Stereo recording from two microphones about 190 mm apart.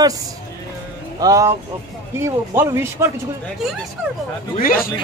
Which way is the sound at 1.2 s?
15° right (ahead or behind).